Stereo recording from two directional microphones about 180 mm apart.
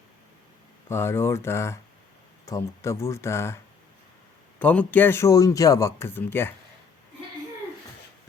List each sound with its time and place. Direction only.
0.9 s a man's voice: 15° left (ahead or behind)
4.6 s a man's voice: 10° left (ahead or behind)